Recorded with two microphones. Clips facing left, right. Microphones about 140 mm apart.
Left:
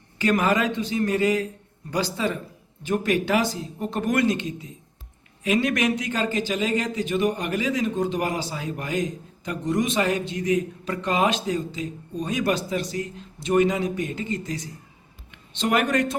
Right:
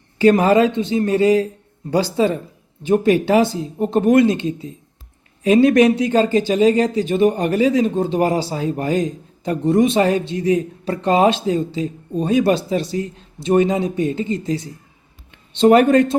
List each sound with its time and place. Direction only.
0.2 s speech: 30° right (ahead or behind)